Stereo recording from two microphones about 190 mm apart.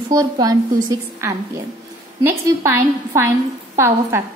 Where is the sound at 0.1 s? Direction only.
20° right (ahead or behind).